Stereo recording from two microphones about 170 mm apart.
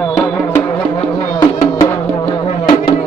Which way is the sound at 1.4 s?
20° left (ahead or behind).